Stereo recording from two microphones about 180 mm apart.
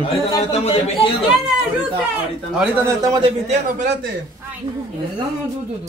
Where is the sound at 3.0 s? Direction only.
25° right (ahead or behind).